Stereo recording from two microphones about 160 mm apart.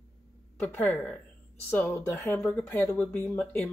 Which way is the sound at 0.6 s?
10° left (ahead or behind).